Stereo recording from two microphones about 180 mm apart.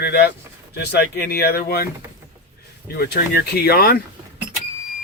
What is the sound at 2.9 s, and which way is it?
Speech, 55° left (ahead or behind).